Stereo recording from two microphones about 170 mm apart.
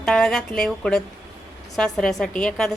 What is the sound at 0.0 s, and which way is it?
A woman's voice, 5° left (ahead or behind).